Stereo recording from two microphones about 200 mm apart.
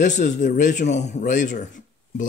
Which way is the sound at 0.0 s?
35° left (ahead or behind).